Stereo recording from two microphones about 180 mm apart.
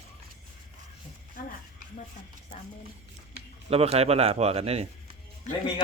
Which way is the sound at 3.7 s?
35° right (ahead or behind).